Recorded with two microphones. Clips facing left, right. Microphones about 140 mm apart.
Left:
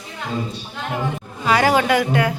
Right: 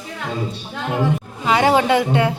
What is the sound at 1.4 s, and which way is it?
Speech, 20° right (ahead or behind).